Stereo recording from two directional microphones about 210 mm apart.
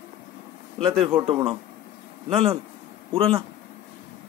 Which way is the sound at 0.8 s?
Centre (ahead or behind).